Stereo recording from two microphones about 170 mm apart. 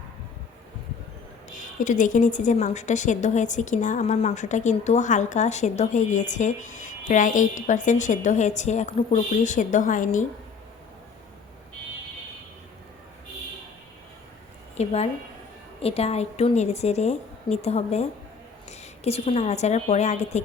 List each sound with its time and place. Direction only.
1.5 s a woman's voice: 45° left (ahead or behind)
14.8 s a woman's voice: 40° left (ahead or behind)